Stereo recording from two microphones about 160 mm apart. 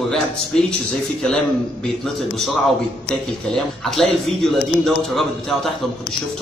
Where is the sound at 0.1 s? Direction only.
5° left (ahead or behind).